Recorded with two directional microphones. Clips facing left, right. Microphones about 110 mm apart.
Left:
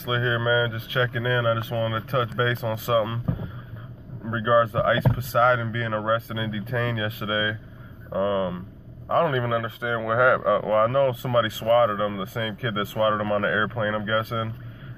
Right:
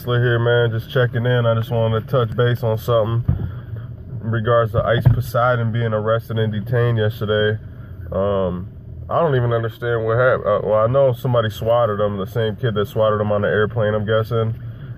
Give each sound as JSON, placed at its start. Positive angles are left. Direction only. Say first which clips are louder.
{"t": 0.0, "sound": "speech", "louder": "right 7 dB", "side_deg": -25}
{"t": 4.3, "sound": "speech", "louder": "right 4 dB", "side_deg": -15}
{"t": 10.9, "sound": "speech", "louder": "right 6 dB", "side_deg": -20}